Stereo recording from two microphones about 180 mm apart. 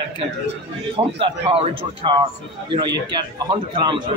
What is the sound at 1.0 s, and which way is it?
A man's voice, 30° right (ahead or behind).